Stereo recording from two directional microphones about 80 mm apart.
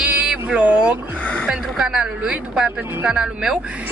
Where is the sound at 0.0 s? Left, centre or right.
Centre.